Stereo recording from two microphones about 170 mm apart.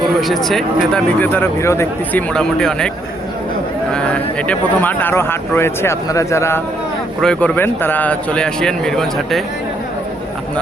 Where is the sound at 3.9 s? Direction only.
5° left (ahead or behind).